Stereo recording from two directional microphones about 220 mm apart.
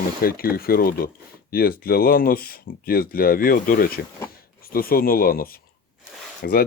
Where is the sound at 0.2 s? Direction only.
40° left (ahead or behind).